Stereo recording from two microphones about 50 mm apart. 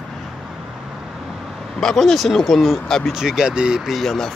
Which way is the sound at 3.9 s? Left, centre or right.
Centre.